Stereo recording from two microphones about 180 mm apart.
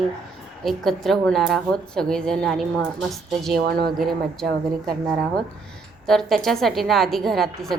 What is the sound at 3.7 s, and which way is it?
Speech, 60° right (ahead or behind).